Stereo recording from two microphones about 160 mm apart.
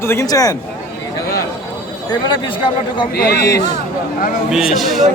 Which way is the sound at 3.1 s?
80° left.